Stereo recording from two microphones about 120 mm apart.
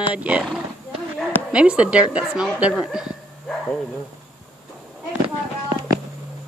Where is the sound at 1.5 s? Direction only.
10° right (ahead or behind).